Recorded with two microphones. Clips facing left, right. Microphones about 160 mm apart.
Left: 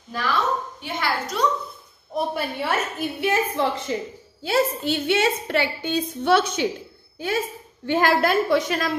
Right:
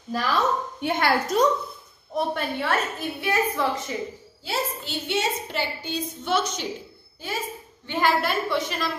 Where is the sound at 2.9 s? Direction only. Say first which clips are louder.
Left 2 dB; 20° left (ahead or behind).